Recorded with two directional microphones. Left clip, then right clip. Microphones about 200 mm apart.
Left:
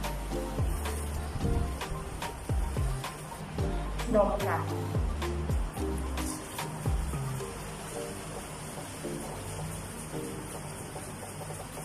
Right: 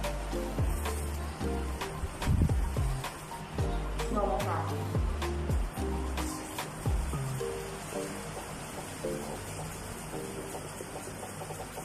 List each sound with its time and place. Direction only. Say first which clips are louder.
1.4 s music: even; centre (ahead or behind)
3.9 s music: left 5 dB; centre (ahead or behind)